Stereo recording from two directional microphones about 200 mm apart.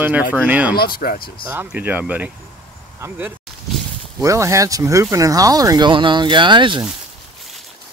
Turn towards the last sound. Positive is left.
turn(degrees=-25)  # may be behind; listen again after turning